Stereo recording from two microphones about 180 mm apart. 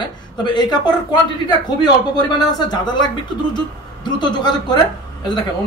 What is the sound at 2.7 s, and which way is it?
A man's voice, 25° left (ahead or behind).